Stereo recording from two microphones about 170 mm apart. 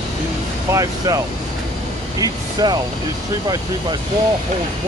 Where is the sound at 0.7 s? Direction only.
20° right (ahead or behind).